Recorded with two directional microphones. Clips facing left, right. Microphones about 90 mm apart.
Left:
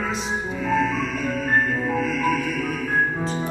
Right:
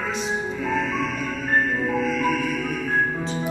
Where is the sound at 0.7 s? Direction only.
Centre (ahead or behind).